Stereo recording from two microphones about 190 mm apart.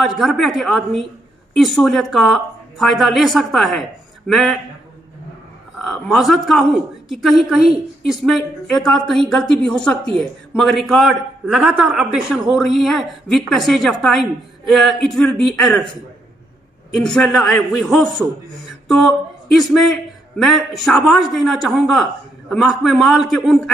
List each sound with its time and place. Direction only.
0.0 s a woman's voice: centre (ahead or behind)
5.8 s a woman's voice: centre (ahead or behind)
16.9 s a woman's voice: 5° left (ahead or behind)